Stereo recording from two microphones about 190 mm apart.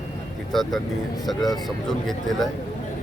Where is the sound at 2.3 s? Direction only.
Centre (ahead or behind).